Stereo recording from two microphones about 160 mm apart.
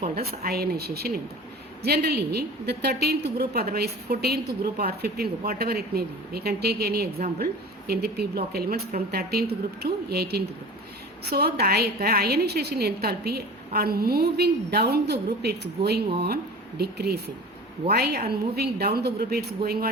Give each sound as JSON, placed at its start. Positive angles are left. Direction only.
{"t": 0.0, "sound": "a woman's voice", "side_deg": -75}